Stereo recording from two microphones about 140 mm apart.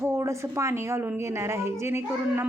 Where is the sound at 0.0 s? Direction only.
20° right (ahead or behind).